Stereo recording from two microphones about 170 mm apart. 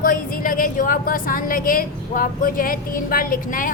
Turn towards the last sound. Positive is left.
turn(degrees=55)  # may be behind; listen again after turning